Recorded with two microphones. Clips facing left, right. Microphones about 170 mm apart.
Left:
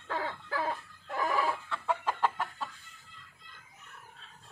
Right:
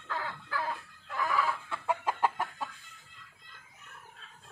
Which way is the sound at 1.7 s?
15° right (ahead or behind).